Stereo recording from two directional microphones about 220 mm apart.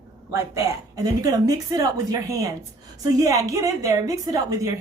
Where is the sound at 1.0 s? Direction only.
15° right (ahead or behind).